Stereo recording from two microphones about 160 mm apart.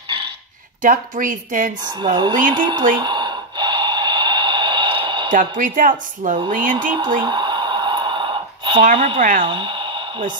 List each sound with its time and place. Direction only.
0.8 s speech: 55° right (ahead or behind)
1.9 s speech: 30° right (ahead or behind)
3.0 s snort: 30° right (ahead or behind)
5.6 s speech: 55° right (ahead or behind)
7.0 s a sound: 30° right (ahead or behind)
8.9 s speech: 35° right (ahead or behind)
9.4 s a sound: 30° right (ahead or behind)